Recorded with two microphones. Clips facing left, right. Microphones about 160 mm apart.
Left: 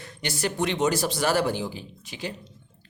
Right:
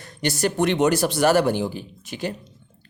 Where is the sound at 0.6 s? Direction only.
60° right (ahead or behind).